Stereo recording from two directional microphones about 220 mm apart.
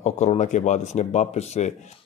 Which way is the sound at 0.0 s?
30° left (ahead or behind).